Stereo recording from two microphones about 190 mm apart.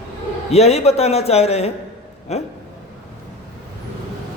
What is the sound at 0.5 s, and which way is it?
Mantra, 35° left (ahead or behind).